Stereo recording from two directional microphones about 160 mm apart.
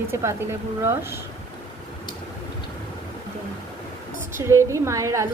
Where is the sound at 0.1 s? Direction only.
15° right (ahead or behind).